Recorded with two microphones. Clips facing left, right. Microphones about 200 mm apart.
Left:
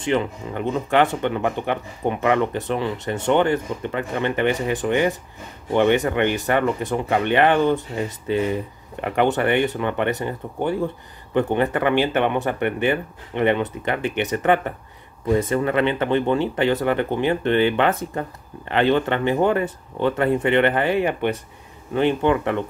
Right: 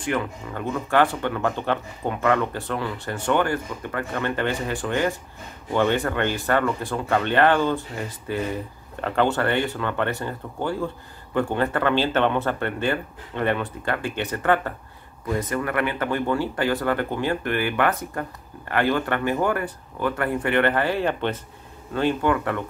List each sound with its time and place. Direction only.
0.0 s speech: 20° left (ahead or behind)